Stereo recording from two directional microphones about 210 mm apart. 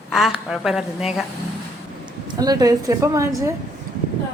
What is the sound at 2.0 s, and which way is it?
Speech, 20° right (ahead or behind).